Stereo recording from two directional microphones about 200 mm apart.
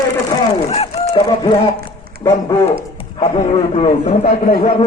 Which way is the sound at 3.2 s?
30° left (ahead or behind).